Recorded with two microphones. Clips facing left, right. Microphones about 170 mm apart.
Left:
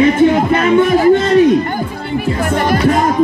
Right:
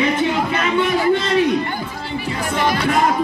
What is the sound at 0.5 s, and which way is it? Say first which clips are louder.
Speech: left 7 dB; 45° left (ahead or behind).